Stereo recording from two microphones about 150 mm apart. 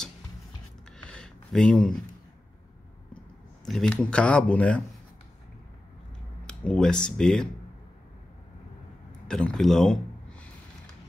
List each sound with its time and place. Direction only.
0.9 s a sound: 5° left (ahead or behind)
3.6 s speech: 5° left (ahead or behind)
6.4 s speech: 5° left (ahead or behind)
9.3 s speech: 5° left (ahead or behind)